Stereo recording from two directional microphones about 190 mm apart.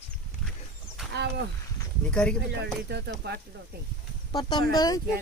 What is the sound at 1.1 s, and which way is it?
Speech, 60° right (ahead or behind).